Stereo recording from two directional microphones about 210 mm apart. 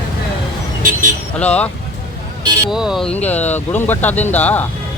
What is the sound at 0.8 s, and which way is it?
Vehicle, 40° right (ahead or behind).